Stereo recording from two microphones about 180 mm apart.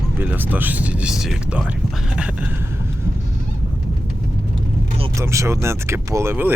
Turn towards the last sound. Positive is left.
turn(degrees=-10)  # may be behind; listen again after turning